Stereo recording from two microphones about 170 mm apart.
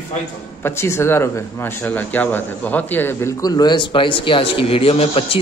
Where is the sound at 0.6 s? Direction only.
15° left (ahead or behind).